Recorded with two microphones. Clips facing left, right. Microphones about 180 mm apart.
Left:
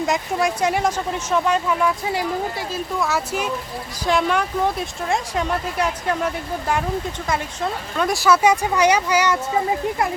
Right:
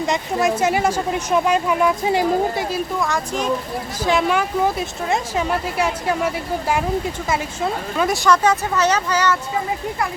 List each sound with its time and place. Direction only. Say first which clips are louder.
0.0 s speech: right 1 dB; centre (ahead or behind)
2.0 s speech: right 5 dB; 25° right (ahead or behind)
3.0 s speech: right 1 dB; 5° left (ahead or behind)